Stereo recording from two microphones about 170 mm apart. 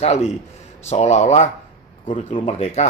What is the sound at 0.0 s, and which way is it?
Speech, 40° left (ahead or behind).